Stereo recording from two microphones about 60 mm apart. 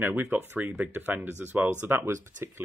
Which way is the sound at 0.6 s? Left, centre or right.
Right.